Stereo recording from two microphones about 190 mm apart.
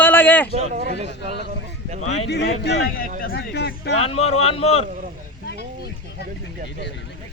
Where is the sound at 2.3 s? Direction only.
60° left (ahead or behind).